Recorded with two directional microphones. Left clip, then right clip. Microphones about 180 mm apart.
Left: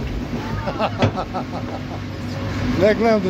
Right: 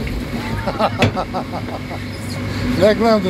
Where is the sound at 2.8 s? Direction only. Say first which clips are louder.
Right 3 dB; 10° left (ahead or behind).